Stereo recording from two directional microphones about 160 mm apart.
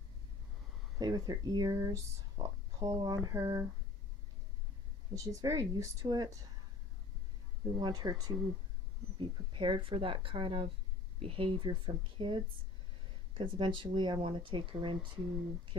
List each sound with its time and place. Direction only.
0.9 s a woman's voice: 25° right (ahead or behind)
5.1 s a woman's voice: 20° right (ahead or behind)
7.8 s a woman's voice: 25° right (ahead or behind)